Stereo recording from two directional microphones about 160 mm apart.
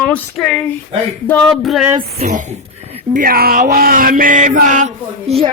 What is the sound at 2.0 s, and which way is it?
A woman's voice, 45° right (ahead or behind).